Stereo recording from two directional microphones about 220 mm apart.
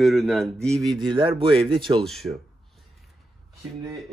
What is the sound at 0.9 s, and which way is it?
Speech, 20° right (ahead or behind).